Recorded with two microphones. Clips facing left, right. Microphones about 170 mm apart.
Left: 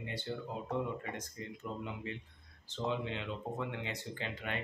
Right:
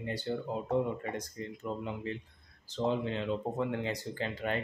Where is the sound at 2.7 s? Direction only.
40° right (ahead or behind).